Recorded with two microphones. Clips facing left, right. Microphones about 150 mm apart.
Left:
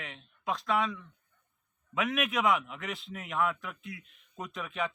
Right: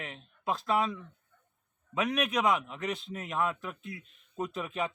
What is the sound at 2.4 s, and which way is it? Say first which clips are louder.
A man's voice: even; 25° right (ahead or behind).